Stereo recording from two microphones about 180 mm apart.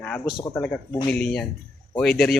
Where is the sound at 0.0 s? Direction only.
5° left (ahead or behind).